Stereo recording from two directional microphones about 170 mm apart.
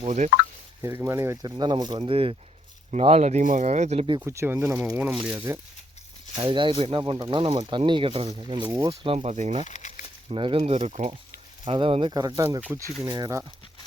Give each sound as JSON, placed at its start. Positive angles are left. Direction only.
{"t": 0.0, "sound": "speech", "side_deg": -40}
{"t": 0.8, "sound": "speech", "side_deg": -15}
{"t": 4.2, "sound": "speech", "side_deg": -15}
{"t": 9.6, "sound": "a sound", "side_deg": 45}
{"t": 10.2, "sound": "speech", "side_deg": -30}
{"t": 11.6, "sound": "speech", "side_deg": -30}